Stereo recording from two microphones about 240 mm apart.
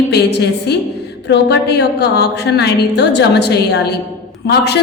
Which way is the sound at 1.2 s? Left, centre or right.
Left.